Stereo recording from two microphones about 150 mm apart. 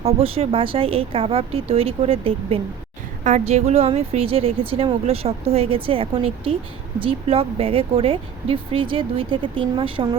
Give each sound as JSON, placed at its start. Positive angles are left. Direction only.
{"t": 0.0, "sound": "speech", "side_deg": -40}